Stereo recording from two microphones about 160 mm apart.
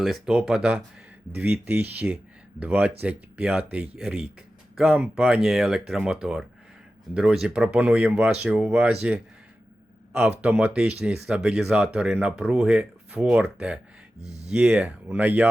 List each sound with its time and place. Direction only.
0.0 s speech: centre (ahead or behind)
14.2 s speech: 40° right (ahead or behind)
14.5 s speech: 5° right (ahead or behind)